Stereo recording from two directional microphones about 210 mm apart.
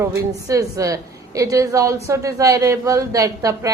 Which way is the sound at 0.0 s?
15° right (ahead or behind).